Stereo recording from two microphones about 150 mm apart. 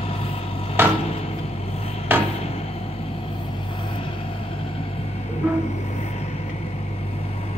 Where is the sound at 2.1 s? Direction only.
15° right (ahead or behind).